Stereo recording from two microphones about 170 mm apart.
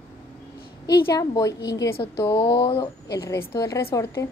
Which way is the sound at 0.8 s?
20° left (ahead or behind).